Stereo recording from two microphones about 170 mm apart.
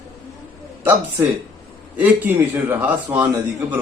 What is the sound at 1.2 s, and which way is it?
A man's voice, 15° right (ahead or behind).